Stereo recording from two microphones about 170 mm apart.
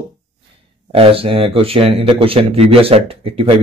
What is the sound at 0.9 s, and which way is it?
Speech, 35° right (ahead or behind).